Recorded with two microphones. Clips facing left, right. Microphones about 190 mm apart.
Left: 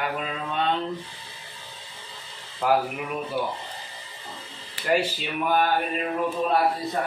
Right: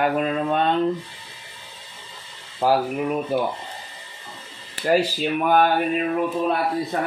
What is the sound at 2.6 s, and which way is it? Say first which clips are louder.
Speech: right 3 dB; 30° right (ahead or behind).